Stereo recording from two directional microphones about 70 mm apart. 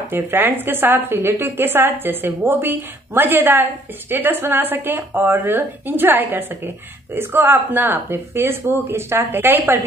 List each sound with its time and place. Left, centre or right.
0.1 s a woman's voice: right